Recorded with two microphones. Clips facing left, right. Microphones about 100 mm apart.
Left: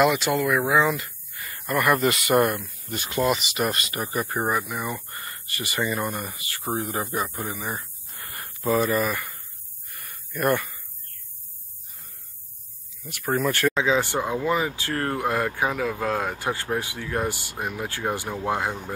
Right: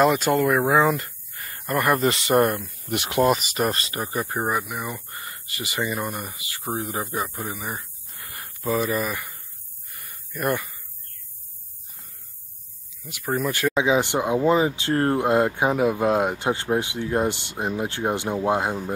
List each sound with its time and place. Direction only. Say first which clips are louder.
0.0 s speech: right 2 dB; 40° right (ahead or behind)
2.9 s speech: right 6 dB; 70° right (ahead or behind)
3.3 s speech: right 2 dB; 40° right (ahead or behind)
4.3 s speech: even; 10° right (ahead or behind)
7.3 s a sound: even; 10° right (ahead or behind)
8.8 s speech: left 2 dB; 15° right (ahead or behind)
10.3 s speech: left 2 dB; 15° right (ahead or behind)
13.0 s speech: left 1 dB; 15° right (ahead or behind)